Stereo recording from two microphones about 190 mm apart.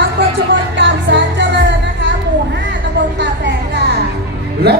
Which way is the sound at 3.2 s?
65° right (ahead or behind).